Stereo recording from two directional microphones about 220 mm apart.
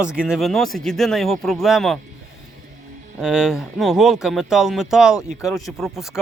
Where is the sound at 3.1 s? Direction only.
Centre (ahead or behind).